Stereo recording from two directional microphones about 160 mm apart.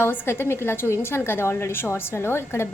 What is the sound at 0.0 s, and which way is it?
A woman's voice, 15° left (ahead or behind).